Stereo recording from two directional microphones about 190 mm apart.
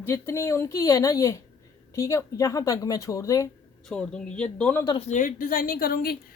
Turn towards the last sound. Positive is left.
turn(degrees=50)  # may be behind; listen again after turning